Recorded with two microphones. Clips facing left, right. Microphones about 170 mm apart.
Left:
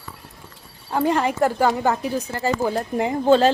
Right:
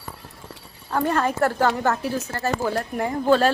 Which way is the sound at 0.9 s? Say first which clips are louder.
Left 2 dB; 15° left (ahead or behind).